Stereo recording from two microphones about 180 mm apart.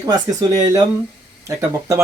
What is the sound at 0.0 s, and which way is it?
Speech, 20° right (ahead or behind).